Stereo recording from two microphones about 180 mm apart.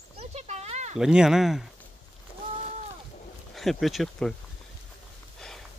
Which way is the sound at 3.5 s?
Centre (ahead or behind).